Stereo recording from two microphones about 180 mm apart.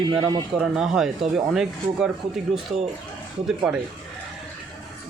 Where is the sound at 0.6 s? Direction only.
5° right (ahead or behind).